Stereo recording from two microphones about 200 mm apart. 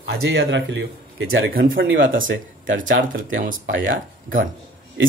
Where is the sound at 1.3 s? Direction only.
45° right (ahead or behind).